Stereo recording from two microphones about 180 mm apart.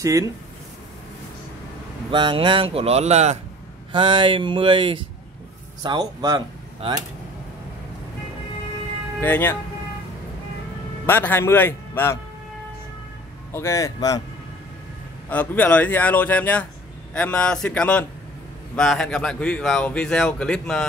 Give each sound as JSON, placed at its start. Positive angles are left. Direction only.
{"t": 0.0, "sound": "speech", "side_deg": -20}
{"t": 2.0, "sound": "speech", "side_deg": -30}
{"t": 3.9, "sound": "speech", "side_deg": -25}
{"t": 9.2, "sound": "a man's voice", "side_deg": 10}
{"t": 11.1, "sound": "a man's voice", "side_deg": 10}
{"t": 13.5, "sound": "a man's voice", "side_deg": 15}
{"t": 15.2, "sound": "a man's voice", "side_deg": 10}